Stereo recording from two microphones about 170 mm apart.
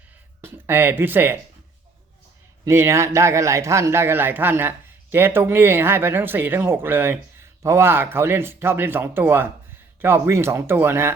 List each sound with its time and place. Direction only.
0.4 s speech: 15° right (ahead or behind)
2.6 s speech: 15° right (ahead or behind)